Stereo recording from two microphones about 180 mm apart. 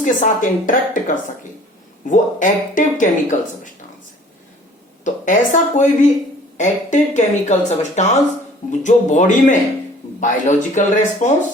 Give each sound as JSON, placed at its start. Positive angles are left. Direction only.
{"t": 0.0, "sound": "speech", "side_deg": 45}
{"t": 5.0, "sound": "speech", "side_deg": 45}